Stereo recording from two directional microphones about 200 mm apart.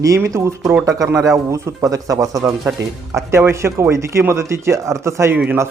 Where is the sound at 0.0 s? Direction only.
15° right (ahead or behind).